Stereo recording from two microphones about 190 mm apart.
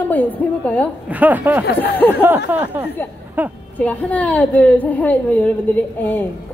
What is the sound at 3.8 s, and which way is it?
A woman's voice, 10° left (ahead or behind).